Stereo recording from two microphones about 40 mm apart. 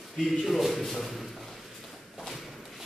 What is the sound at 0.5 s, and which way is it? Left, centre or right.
Speech, centre.